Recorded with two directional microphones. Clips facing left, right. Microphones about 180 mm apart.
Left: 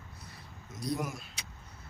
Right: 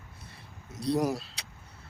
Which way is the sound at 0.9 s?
35° right (ahead or behind).